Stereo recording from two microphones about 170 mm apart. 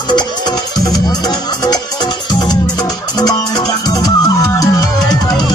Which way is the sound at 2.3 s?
25° left (ahead or behind).